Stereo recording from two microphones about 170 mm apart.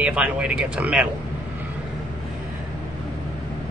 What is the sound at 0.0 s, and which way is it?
Speech, 5° right (ahead or behind).